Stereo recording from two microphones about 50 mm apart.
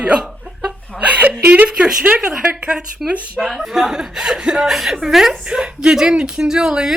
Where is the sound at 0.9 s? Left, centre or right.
Right.